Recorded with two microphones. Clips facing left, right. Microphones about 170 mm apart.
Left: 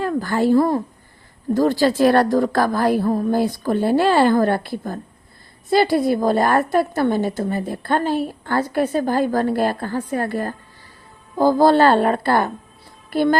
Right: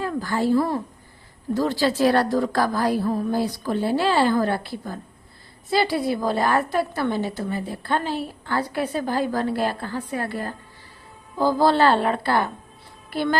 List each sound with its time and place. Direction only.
0.0 s a woman's voice: 55° left (ahead or behind)